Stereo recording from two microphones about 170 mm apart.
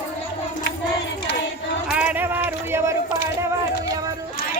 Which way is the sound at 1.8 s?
5° right (ahead or behind).